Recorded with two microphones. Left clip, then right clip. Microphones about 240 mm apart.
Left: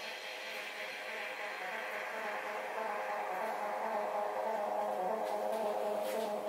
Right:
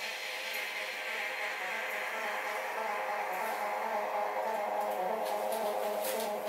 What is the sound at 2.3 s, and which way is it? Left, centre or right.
Music, centre.